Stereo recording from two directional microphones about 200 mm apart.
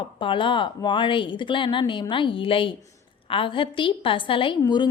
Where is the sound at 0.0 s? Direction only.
25° left (ahead or behind).